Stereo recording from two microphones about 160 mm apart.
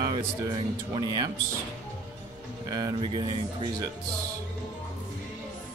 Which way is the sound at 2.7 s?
30° right (ahead or behind).